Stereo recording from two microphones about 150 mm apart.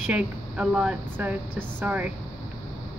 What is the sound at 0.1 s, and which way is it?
Speech, 5° right (ahead or behind).